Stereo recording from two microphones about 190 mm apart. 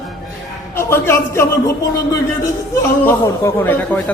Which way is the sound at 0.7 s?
15° left (ahead or behind).